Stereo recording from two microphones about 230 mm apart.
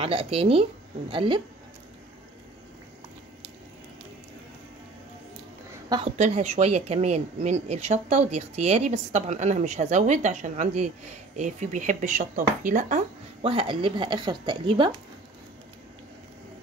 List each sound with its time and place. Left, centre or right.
0.0 s speech: right
5.9 s speech: right